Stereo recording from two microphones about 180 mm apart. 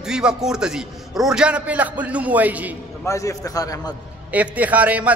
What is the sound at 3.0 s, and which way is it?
Speech, 15° left (ahead or behind).